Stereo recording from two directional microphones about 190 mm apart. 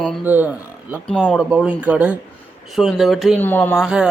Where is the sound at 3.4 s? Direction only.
10° left (ahead or behind).